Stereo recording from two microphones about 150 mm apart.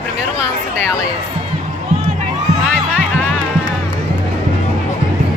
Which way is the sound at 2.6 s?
5° right (ahead or behind).